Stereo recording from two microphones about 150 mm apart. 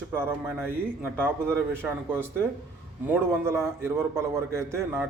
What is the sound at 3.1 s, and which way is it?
A man's voice, 15° right (ahead or behind).